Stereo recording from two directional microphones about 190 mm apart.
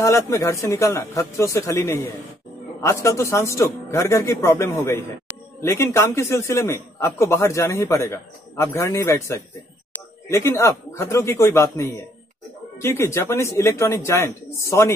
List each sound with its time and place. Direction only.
0.0 s a man's voice: 15° left (ahead or behind)